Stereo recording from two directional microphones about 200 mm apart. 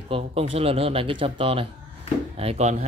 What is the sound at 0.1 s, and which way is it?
Speech, 30° right (ahead or behind).